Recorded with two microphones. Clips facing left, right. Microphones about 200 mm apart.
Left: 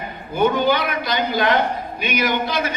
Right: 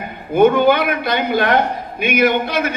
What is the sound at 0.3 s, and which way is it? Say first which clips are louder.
A man's voice: right 6 dB; 55° right (ahead or behind).